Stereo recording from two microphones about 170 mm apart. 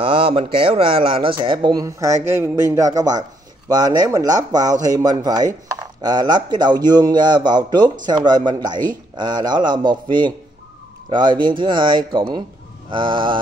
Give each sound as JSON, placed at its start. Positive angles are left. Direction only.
{"t": 0.0, "sound": "speech", "side_deg": -30}